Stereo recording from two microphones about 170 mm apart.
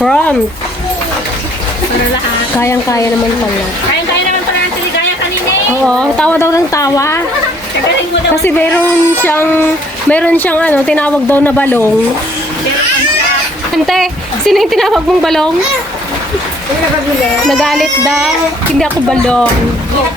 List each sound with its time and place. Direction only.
0.0 s speech: 5° left (ahead or behind)
2.6 s speech: 15° left (ahead or behind)
5.8 s speech: 5° left (ahead or behind)
8.4 s speech: 10° left (ahead or behind)
13.7 s a woman's voice: centre (ahead or behind)
17.4 s speech: centre (ahead or behind)